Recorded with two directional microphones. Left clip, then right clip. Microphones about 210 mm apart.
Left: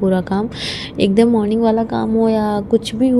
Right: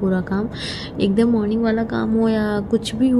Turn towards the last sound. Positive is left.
turn(degrees=15)  # may be behind; listen again after turning